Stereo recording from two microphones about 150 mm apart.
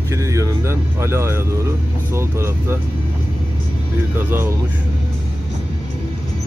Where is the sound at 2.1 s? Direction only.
15° right (ahead or behind).